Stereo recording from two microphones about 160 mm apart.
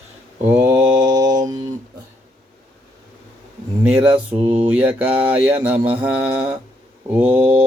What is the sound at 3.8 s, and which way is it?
Mantra, 10° right (ahead or behind).